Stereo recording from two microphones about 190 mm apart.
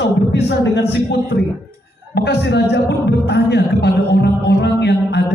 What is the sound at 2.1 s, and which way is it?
Speech, 60° left (ahead or behind).